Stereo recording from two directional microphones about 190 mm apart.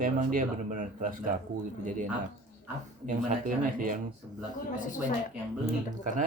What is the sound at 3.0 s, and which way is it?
Speech, 45° right (ahead or behind).